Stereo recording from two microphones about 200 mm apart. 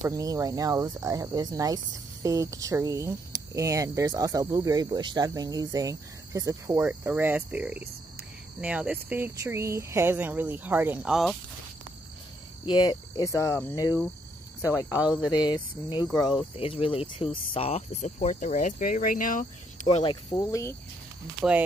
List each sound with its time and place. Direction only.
0.0 s speech: 15° right (ahead or behind); by 11.3 s centre (ahead or behind)
12.6 s speech: 20° left (ahead or behind)
15.0 s speech: 5° right (ahead or behind)
15.3 s speech: 20° left (ahead or behind); by 20.0 s 40° left (ahead or behind)
20.0 s speech: 25° left (ahead or behind)
21.4 s speech: 5° right (ahead or behind)